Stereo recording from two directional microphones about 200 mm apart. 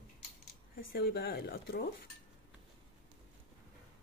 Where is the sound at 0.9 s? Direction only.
50° left (ahead or behind).